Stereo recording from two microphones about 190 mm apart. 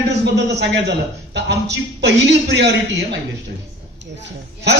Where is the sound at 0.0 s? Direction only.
65° right (ahead or behind).